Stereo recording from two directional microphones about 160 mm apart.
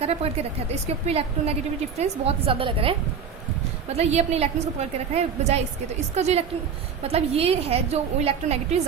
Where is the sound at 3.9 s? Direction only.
40° right (ahead or behind).